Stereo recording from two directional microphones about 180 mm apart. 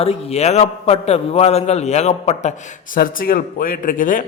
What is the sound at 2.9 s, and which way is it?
Speech, 55° left (ahead or behind).